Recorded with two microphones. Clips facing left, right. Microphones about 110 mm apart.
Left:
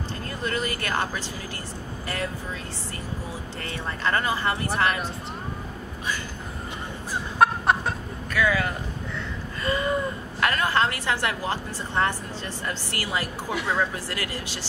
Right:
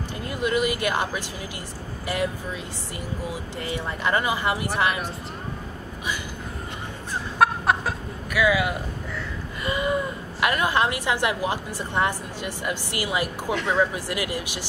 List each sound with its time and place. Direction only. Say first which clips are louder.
0.3 s a woman's voice: right 6 dB; 15° right (ahead or behind)
7.3 s chicken: even; centre (ahead or behind)
9.7 s a woman's voice: even; 15° right (ahead or behind)